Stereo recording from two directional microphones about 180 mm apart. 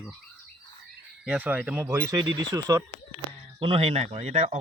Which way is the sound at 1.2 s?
5° right (ahead or behind).